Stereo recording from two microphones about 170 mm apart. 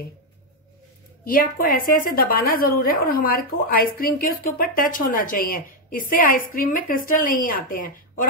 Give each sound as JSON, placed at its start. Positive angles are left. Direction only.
{"t": 1.2, "sound": "a woman's voice", "side_deg": 55}